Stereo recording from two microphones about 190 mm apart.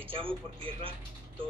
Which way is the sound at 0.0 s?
25° right (ahead or behind).